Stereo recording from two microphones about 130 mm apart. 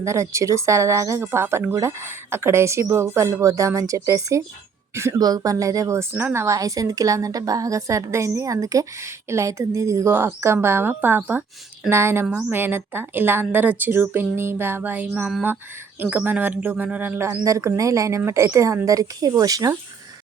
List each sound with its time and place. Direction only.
0.0 s a woman's voice: 20° right (ahead or behind)